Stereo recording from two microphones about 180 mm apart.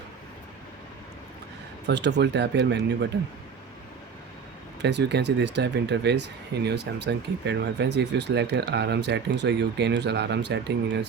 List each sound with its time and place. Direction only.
1.9 s speech: 75° right (ahead or behind)
4.8 s speech: 75° right (ahead or behind)